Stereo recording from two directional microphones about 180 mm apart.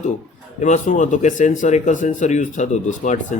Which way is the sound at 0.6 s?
45° left (ahead or behind).